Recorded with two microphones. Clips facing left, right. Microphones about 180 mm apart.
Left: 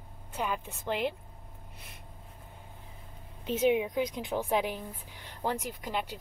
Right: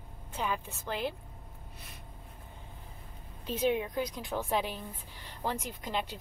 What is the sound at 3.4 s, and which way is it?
A woman's voice, 15° left (ahead or behind).